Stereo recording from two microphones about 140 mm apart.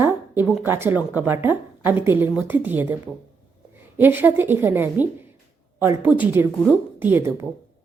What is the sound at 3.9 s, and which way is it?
A woman's voice, 15° right (ahead or behind).